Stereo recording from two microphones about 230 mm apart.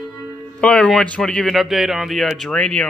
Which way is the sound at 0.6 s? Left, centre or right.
Centre.